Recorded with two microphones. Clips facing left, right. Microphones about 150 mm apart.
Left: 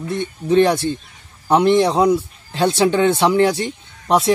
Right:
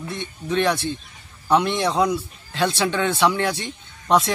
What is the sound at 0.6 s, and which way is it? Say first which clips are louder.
Speech: left 5 dB; 40° left (ahead or behind).